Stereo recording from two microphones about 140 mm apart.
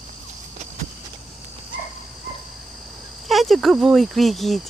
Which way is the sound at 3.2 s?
Centre (ahead or behind).